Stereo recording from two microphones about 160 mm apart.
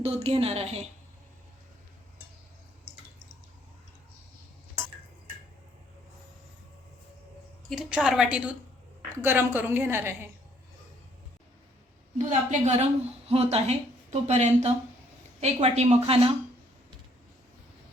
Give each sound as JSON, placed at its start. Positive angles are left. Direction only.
{"t": 0.0, "sound": "a woman's voice", "side_deg": -40}
{"t": 7.7, "sound": "a woman's voice", "side_deg": -5}
{"t": 12.1, "sound": "a woman's voice", "side_deg": -45}